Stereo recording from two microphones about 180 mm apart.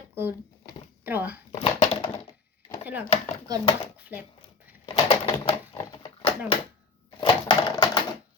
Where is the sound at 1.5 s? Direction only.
35° left (ahead or behind).